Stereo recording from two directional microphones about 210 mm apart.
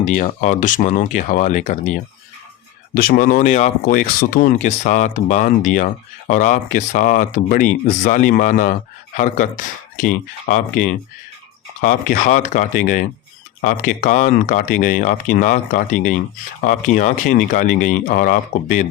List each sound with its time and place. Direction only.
0.0 s speech: 35° left (ahead or behind)